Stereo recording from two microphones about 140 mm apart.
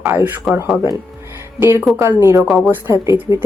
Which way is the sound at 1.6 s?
15° right (ahead or behind).